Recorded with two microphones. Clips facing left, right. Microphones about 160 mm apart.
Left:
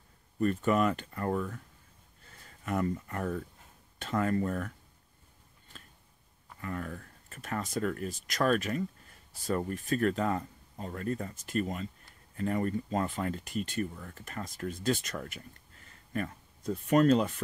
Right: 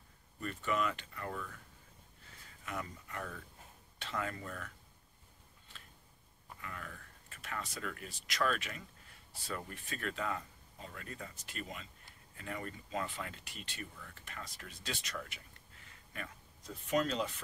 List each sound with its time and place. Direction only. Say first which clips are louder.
0.4 s speech: left 9 dB; 45° left (ahead or behind)
2.6 s speech: left 12 dB; 50° left (ahead or behind)
6.6 s speech: left 11 dB; 45° left (ahead or behind)